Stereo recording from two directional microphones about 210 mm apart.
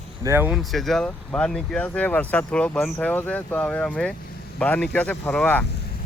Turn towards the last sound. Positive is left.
turn(degrees=5)  # may be behind; listen again after turning